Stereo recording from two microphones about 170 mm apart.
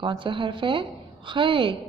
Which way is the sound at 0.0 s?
30° right (ahead or behind).